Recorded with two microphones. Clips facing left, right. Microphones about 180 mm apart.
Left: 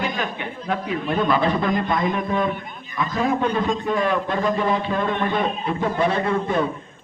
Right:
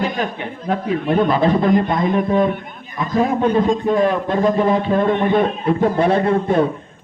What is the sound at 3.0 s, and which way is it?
A man's voice, 45° right (ahead or behind).